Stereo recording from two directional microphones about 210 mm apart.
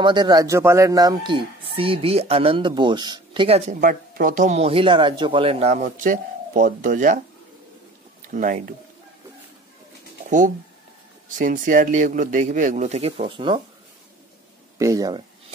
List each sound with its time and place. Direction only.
0.0 s speech: 20° right (ahead or behind); by 7.2 s 40° right (ahead or behind)
8.3 s a man's voice: 40° right (ahead or behind)
11.2 s a man's voice: 40° right (ahead or behind)
14.8 s speech: 15° right (ahead or behind)